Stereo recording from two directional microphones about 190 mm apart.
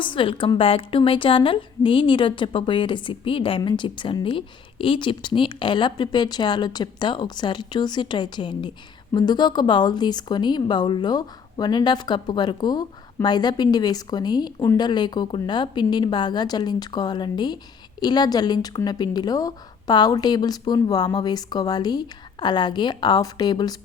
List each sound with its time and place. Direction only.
0.0 s a woman's voice: 25° left (ahead or behind)